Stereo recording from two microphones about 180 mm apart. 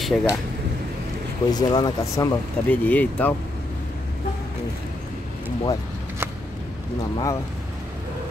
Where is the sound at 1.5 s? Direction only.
20° left (ahead or behind).